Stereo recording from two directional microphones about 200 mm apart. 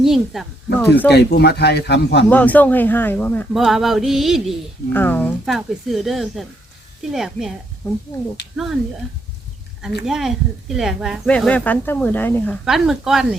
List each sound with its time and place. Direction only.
0.0 s speech: centre (ahead or behind)
1.1 s speech: 55° left (ahead or behind)
2.3 s speech: 10° left (ahead or behind)
4.9 s speech: 10° left (ahead or behind)
10.1 s speech: centre (ahead or behind)
12.6 s speech: centre (ahead or behind)